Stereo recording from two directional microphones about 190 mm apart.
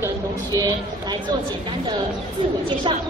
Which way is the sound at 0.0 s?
20° right (ahead or behind).